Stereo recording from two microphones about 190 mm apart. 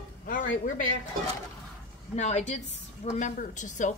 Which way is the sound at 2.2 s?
40° left (ahead or behind).